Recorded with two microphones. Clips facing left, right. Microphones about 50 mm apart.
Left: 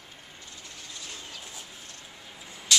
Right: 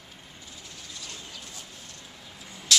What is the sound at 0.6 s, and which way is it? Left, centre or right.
Vehicle, centre.